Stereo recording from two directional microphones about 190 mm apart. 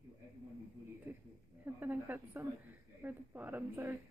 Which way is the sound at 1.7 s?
10° right (ahead or behind).